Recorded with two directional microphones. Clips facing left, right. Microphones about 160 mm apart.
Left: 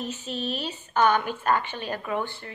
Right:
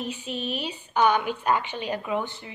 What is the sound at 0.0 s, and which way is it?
A woman's voice, 10° right (ahead or behind).